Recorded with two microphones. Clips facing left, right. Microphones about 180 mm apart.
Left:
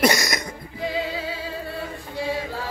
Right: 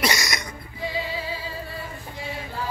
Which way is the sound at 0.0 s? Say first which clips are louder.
Left 5 dB; 55° left (ahead or behind).